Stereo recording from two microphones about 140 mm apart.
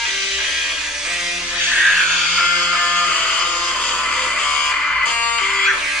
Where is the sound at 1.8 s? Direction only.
Centre (ahead or behind).